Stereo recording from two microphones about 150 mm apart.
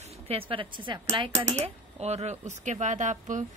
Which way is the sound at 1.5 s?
50° right (ahead or behind).